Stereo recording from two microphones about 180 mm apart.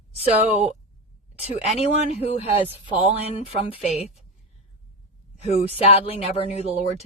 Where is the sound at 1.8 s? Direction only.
35° left (ahead or behind).